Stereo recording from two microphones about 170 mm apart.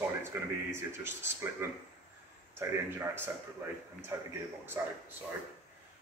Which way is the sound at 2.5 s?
15° right (ahead or behind).